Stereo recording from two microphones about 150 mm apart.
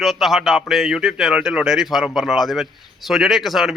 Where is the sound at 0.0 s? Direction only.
Centre (ahead or behind).